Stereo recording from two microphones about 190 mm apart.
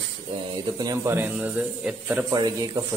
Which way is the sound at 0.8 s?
15° right (ahead or behind).